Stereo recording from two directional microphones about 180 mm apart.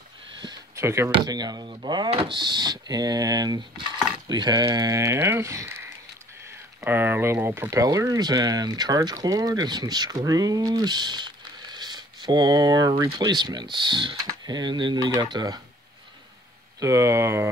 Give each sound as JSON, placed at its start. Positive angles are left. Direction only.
{"t": 0.4, "sound": "a sound", "side_deg": -20}
{"t": 1.1, "sound": "speech", "side_deg": -20}
{"t": 16.8, "sound": "speech", "side_deg": -15}